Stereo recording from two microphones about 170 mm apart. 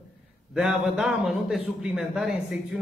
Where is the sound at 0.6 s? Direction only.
5° right (ahead or behind).